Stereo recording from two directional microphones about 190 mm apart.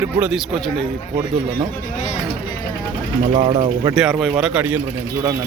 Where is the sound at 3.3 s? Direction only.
30° right (ahead or behind).